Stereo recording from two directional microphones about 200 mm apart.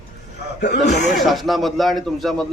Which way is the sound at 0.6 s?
55° left (ahead or behind).